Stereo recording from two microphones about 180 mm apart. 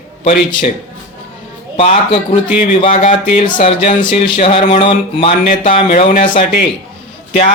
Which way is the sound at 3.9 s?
25° left (ahead or behind).